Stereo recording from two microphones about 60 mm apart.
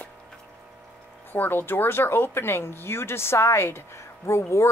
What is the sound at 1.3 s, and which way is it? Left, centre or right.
Speech, left.